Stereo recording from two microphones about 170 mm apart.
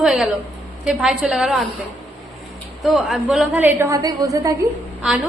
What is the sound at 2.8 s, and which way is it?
A woman's voice, centre (ahead or behind).